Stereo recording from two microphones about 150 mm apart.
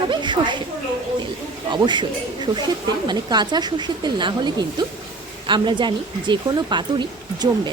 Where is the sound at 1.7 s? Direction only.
30° right (ahead or behind).